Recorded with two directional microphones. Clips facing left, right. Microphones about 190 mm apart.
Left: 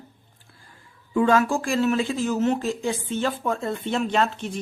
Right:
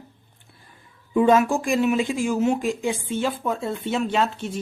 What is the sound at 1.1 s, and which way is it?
Speech, 20° right (ahead or behind).